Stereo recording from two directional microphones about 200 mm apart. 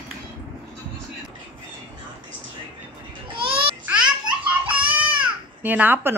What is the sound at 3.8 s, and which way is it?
Baby laughter, 5° right (ahead or behind).